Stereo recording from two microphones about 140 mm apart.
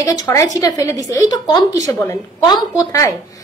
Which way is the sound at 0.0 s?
25° left (ahead or behind).